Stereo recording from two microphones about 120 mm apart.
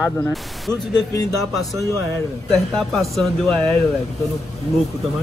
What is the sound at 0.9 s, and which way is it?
Speech, 30° left (ahead or behind).